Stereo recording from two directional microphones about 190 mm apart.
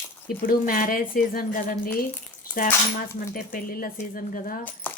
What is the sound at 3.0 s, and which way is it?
Speech, 50° left (ahead or behind).